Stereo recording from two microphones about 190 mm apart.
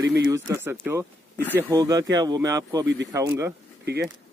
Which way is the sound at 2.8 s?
70° right (ahead or behind).